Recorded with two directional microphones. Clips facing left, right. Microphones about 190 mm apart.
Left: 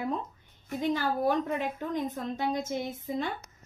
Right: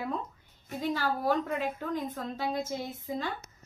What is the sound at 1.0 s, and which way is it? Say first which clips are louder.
A woman's voice: right 1 dB; 20° left (ahead or behind).